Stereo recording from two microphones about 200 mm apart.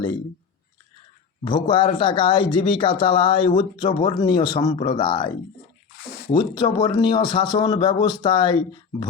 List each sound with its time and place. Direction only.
1.5 s speech: 25° left (ahead or behind)
6.3 s speech: 20° left (ahead or behind)